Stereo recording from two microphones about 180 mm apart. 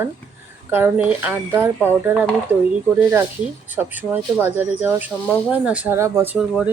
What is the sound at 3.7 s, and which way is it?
Speech, 10° right (ahead or behind).